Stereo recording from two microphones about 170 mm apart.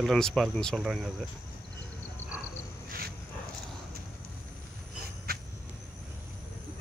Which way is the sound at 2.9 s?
65° right (ahead or behind).